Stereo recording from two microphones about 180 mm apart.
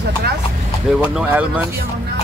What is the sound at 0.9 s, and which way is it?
Speech, 5° right (ahead or behind).